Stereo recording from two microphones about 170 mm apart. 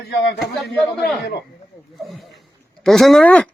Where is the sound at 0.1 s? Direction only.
75° left (ahead or behind).